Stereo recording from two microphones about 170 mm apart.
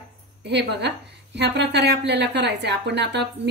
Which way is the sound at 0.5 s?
80° right.